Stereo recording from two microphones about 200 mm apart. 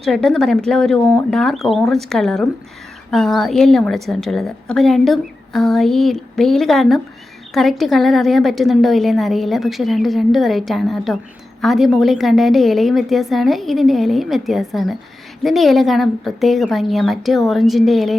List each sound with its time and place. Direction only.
0.0 s a woman's voice: centre (ahead or behind)